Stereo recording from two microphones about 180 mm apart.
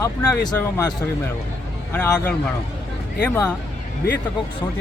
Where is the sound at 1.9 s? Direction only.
10° left (ahead or behind).